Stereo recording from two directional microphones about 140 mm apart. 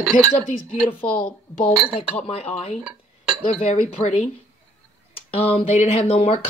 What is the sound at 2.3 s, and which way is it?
Speech, 45° left (ahead or behind).